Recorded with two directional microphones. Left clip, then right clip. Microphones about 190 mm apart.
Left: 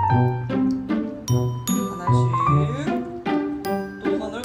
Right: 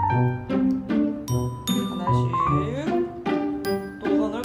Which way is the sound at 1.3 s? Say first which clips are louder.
Left 2 dB; 10° left (ahead or behind).